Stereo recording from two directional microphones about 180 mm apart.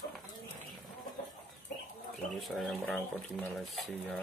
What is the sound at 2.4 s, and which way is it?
Speech, centre (ahead or behind).